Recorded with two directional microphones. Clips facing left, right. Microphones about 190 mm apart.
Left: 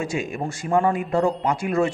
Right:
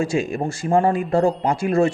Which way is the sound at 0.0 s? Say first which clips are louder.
Right 5 dB; 30° right (ahead or behind).